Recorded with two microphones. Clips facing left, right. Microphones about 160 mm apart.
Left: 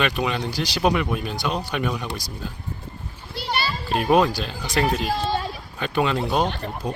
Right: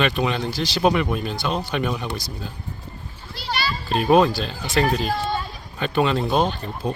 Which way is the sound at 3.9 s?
10° left (ahead or behind).